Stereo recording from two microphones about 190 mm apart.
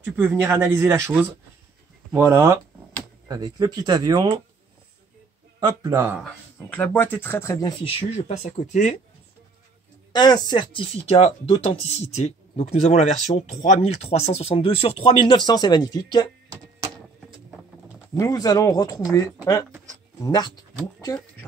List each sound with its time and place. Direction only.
0.0 s a man's voice: 10° right (ahead or behind)
5.6 s speech: 20° right (ahead or behind)
6.7 s speech: 10° left (ahead or behind)
7.8 s speech: 30° left (ahead or behind)
10.1 s speech: 20° left (ahead or behind)
18.1 s speech: 20° left (ahead or behind)